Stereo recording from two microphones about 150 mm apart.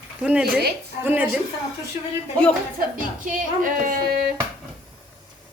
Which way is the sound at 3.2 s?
65° right (ahead or behind).